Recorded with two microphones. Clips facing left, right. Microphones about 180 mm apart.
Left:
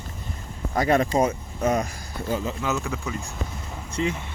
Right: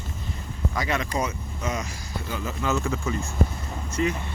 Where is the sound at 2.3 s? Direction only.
30° left (ahead or behind).